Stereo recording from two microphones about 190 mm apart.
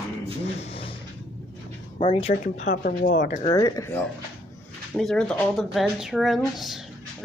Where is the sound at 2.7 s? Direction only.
60° left (ahead or behind).